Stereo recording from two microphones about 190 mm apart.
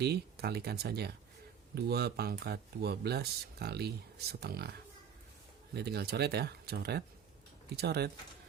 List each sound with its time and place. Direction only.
0.0 s speech: 60° right (ahead or behind)
5.7 s speech: 60° right (ahead or behind)